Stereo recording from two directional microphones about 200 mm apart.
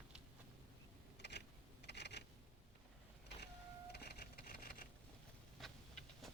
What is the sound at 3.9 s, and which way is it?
Telephone dialing, 50° left (ahead or behind).